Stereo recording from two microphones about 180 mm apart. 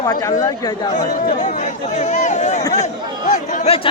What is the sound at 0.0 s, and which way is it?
Speech, 20° left (ahead or behind).